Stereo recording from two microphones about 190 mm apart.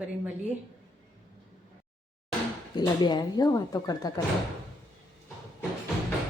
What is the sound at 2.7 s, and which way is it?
Speech, 20° left (ahead or behind).